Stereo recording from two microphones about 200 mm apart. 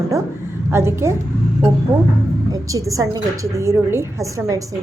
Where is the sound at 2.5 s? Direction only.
15° right (ahead or behind).